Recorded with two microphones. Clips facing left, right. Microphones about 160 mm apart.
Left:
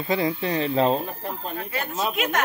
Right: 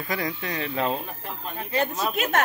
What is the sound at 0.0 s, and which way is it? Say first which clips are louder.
Speech: left 6 dB; 25° left (ahead or behind).